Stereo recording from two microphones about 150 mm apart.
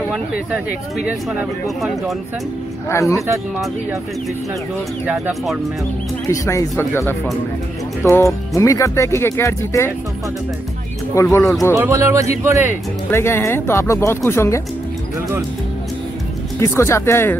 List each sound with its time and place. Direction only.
0.1 s speech: 5° right (ahead or behind)
2.9 s speech: 20° left (ahead or behind)
5.0 s speech: 5° right (ahead or behind)
6.2 s speech: 20° left (ahead or behind)
11.2 s speech: 20° left (ahead or behind)
11.7 s speech: 20° right (ahead or behind)
13.1 s speech: 15° left (ahead or behind)
16.5 s speech: 20° left (ahead or behind)